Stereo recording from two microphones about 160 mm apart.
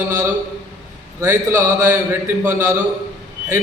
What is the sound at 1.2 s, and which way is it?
A man's voice, 20° right (ahead or behind).